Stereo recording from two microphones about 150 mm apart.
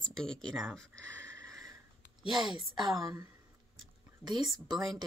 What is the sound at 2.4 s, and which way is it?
Speech, 30° right (ahead or behind).